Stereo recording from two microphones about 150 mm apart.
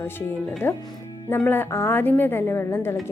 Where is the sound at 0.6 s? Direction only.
15° left (ahead or behind).